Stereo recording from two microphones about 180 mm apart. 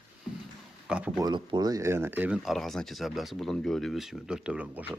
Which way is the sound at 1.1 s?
25° right (ahead or behind).